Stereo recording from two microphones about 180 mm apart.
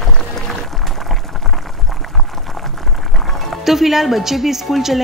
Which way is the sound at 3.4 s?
Centre (ahead or behind).